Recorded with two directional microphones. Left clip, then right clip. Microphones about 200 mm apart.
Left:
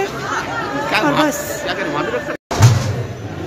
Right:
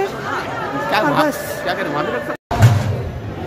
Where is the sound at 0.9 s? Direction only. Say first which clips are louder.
Even; 30° right (ahead or behind).